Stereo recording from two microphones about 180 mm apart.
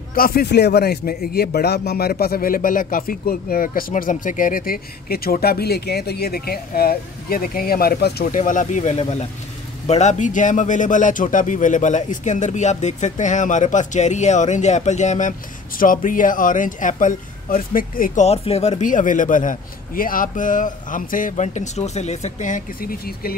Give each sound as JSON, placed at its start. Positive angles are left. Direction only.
{"t": 0.1, "sound": "a man's voice", "side_deg": 55}
{"t": 8.4, "sound": "speech", "side_deg": 45}